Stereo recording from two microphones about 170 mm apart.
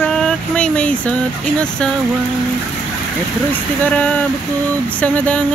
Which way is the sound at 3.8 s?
10° left (ahead or behind).